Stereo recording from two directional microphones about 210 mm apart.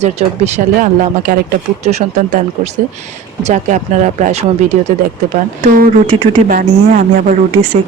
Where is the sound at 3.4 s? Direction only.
35° right (ahead or behind).